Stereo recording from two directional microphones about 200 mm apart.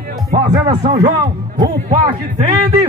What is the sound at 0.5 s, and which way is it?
Speech, 20° right (ahead or behind).